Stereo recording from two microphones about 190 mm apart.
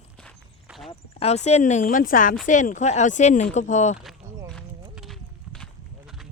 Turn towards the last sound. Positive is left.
turn(degrees=0)  # may be behind; listen again after turning